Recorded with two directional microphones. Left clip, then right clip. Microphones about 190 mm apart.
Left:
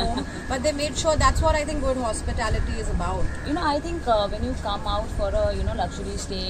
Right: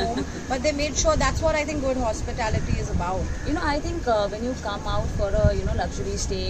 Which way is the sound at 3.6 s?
15° right (ahead or behind).